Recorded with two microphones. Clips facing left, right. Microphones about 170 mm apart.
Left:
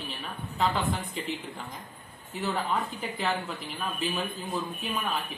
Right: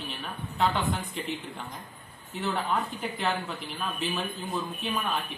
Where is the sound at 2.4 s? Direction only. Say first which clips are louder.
Even; centre (ahead or behind).